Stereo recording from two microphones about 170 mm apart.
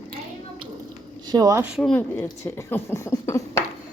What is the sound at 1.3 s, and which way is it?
Speech, 20° right (ahead or behind).